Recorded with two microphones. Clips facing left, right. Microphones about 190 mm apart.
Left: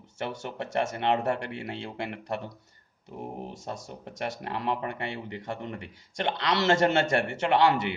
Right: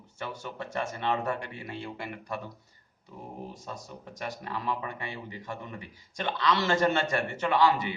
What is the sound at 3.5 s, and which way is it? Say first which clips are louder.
Speech: left 4 dB; 75° left (ahead or behind).